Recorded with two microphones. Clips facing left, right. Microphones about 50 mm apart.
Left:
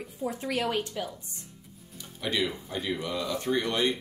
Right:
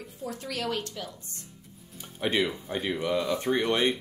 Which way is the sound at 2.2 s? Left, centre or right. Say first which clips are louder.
Right 3 dB; right.